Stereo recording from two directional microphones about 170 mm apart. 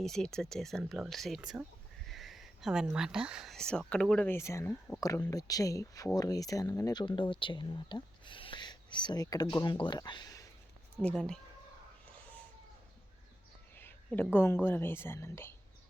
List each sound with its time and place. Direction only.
0.0 s speech: 5° left (ahead or behind); by 10.4 s 25° left (ahead or behind)
11.0 s speech: 5° left (ahead or behind)
13.7 s a woman's voice: 10° left (ahead or behind)